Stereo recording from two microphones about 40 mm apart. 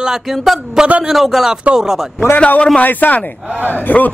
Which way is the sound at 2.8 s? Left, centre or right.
Left.